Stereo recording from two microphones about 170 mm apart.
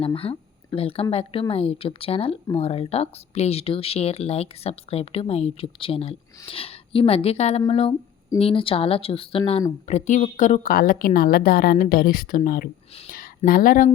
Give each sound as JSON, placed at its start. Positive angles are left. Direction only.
{"t": 0.0, "sound": "a woman's voice", "side_deg": 35}